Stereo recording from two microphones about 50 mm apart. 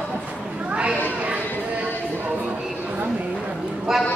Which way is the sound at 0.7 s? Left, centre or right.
Right.